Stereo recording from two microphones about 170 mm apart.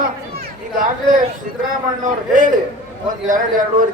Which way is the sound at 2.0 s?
50° right (ahead or behind).